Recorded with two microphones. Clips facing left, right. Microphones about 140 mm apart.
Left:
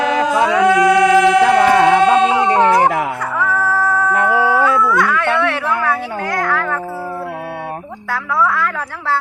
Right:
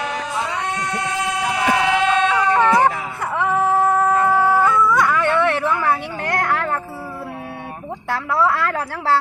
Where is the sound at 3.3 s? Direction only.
20° right (ahead or behind).